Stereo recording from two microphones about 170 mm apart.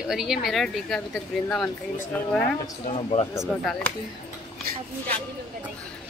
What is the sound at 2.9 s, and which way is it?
Speech, 35° left (ahead or behind).